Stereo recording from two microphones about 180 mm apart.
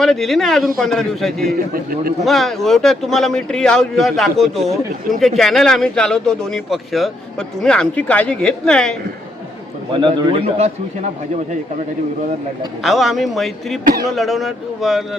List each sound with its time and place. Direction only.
0.0 s speech: centre (ahead or behind)
1.5 s a man's voice: 55° right (ahead or behind)
2.2 s speech: centre (ahead or behind)
9.9 s a man's voice: 25° right (ahead or behind)
12.8 s speech: centre (ahead or behind)